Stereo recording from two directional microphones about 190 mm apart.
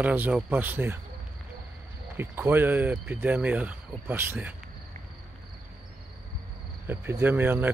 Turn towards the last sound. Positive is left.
turn(degrees=-10)  # may be behind; listen again after turning